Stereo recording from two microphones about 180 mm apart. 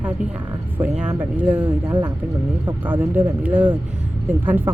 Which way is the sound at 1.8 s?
25° right (ahead or behind).